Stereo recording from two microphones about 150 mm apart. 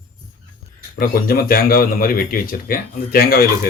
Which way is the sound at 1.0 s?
80° left.